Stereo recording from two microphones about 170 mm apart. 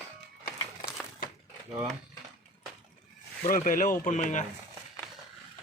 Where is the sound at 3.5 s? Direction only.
50° left (ahead or behind).